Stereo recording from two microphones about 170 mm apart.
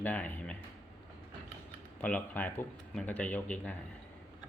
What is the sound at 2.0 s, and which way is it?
Speech, 10° left (ahead or behind).